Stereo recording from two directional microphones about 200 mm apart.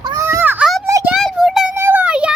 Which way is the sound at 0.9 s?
15° right (ahead or behind).